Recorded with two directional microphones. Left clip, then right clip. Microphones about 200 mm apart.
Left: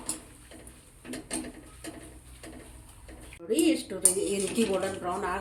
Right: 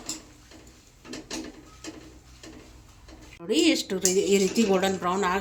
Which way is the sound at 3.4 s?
40° right (ahead or behind).